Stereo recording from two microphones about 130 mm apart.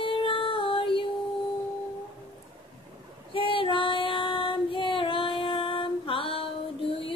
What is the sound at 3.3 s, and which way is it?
Female singing, 40° left (ahead or behind).